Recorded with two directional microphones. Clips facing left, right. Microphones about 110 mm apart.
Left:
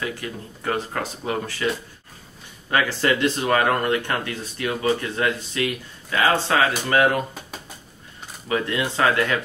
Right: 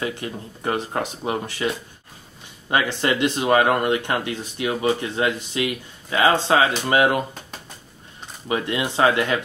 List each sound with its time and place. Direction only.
0.0 s speech: 25° right (ahead or behind)
2.7 s speech: 20° right (ahead or behind)
8.5 s speech: 20° right (ahead or behind)